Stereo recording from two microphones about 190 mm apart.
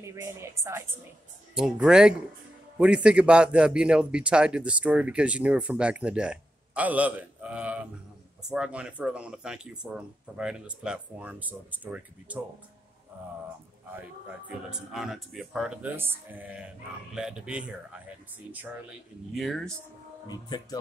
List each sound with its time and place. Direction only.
0.0 s a woman's voice: 15° right (ahead or behind)
1.5 s a man's voice: 5° right (ahead or behind)
14.7 s a man's voice: centre (ahead or behind)
19.3 s a man's voice: centre (ahead or behind)
20.2 s speech: 20° left (ahead or behind)